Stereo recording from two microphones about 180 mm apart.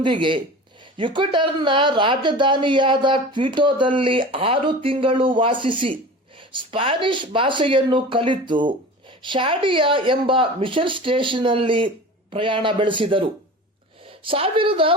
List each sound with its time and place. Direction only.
0.0 s speech: 25° right (ahead or behind)